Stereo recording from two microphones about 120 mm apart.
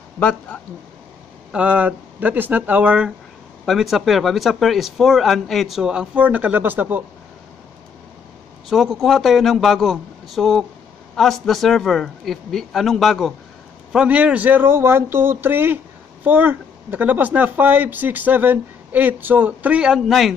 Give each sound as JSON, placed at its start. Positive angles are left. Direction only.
{"t": 0.2, "sound": "speech", "side_deg": 10}
{"t": 1.5, "sound": "speech", "side_deg": -10}
{"t": 8.6, "sound": "speech", "side_deg": 0}
{"t": 13.9, "sound": "speech", "side_deg": -10}